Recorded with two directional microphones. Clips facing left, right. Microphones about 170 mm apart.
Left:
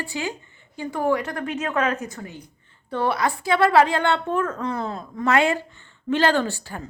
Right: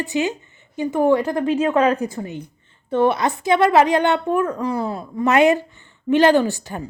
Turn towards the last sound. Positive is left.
turn(degrees=-15)  # may be behind; listen again after turning